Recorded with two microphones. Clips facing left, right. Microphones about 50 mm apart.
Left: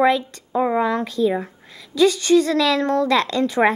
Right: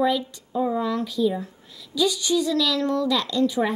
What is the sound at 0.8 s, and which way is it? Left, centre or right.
A woman's voice, left.